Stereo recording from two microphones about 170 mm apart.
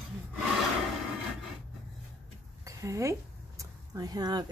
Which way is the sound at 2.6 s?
20° right (ahead or behind).